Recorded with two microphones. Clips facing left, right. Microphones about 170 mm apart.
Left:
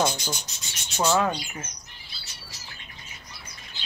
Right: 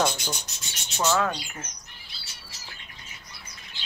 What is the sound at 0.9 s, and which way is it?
Speech, 15° left (ahead or behind).